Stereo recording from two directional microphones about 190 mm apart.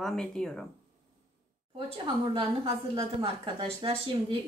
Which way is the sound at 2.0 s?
25° right (ahead or behind).